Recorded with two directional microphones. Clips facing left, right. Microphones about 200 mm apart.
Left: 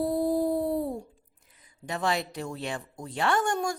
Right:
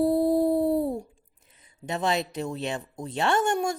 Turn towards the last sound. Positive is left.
turn(degrees=-25)  # may be behind; listen again after turning